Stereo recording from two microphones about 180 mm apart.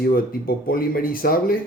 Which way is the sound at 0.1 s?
55° left (ahead or behind).